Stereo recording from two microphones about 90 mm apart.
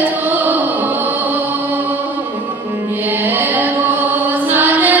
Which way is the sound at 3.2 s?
20° right (ahead or behind).